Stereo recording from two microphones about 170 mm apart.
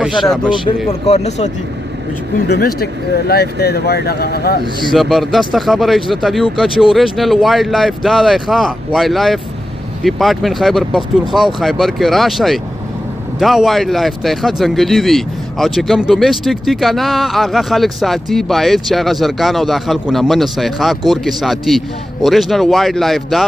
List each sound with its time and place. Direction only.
0.0 s speech: centre (ahead or behind)
0.8 s speech: 35° left (ahead or behind)
2.4 s speech: 70° left (ahead or behind)
4.9 s speech: centre (ahead or behind)